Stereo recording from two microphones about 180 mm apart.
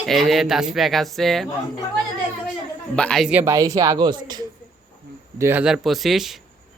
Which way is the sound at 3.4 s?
20° right (ahead or behind).